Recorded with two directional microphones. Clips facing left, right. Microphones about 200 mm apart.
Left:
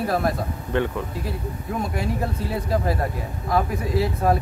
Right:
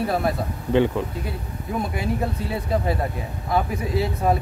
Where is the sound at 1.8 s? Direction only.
Centre (ahead or behind).